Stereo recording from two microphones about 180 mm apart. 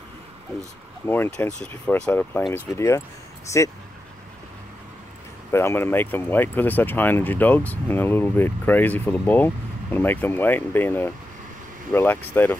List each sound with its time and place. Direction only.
1.0 s speech: 10° left (ahead or behind)
5.5 s speech: 15° left (ahead or behind)